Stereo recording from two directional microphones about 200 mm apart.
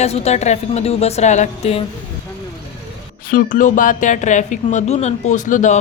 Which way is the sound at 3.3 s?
45° left (ahead or behind).